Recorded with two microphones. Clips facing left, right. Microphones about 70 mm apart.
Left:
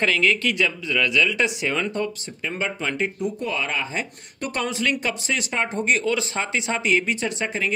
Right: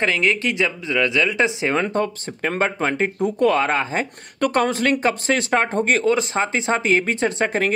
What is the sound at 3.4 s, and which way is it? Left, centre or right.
Speech, right.